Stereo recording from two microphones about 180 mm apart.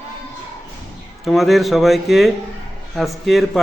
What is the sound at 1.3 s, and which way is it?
Speech, centre (ahead or behind).